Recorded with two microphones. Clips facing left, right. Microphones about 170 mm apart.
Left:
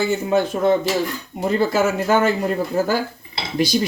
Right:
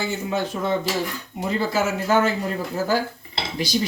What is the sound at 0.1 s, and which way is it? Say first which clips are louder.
Speech: left 6 dB; 55° left (ahead or behind).